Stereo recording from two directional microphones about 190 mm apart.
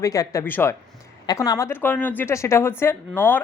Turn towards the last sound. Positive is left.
turn(degrees=10)  # may be behind; listen again after turning